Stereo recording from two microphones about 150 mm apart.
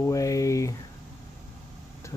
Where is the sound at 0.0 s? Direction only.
20° left (ahead or behind).